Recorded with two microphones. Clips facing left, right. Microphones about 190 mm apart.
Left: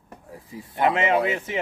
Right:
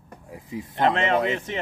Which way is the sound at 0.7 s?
10° left (ahead or behind).